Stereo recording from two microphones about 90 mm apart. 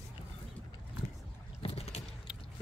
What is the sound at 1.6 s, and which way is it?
Vehicle, 90° left.